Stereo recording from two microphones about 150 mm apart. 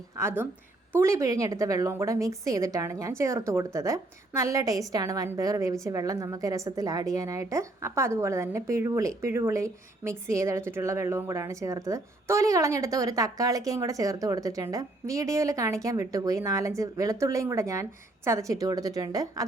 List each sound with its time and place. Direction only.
0.2 s a woman's voice: 15° right (ahead or behind)